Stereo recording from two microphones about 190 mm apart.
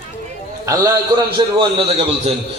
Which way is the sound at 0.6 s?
15° right (ahead or behind).